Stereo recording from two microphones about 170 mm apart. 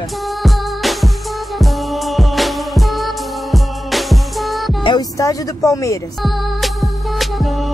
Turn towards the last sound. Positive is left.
turn(degrees=0)  # may be behind; listen again after turning